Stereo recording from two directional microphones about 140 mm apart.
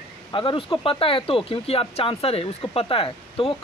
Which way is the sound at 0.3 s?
35° left (ahead or behind).